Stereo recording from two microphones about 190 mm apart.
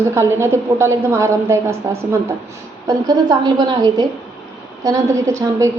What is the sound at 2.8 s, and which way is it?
A woman's voice, 20° right (ahead or behind).